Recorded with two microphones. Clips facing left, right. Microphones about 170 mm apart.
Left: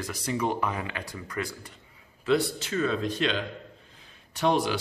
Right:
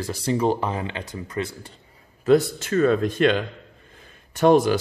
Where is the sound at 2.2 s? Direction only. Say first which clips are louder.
Right 7 dB; 45° right (ahead or behind).